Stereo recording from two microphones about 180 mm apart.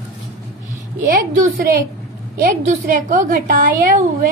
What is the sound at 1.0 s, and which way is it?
A woman's voice, 45° right (ahead or behind).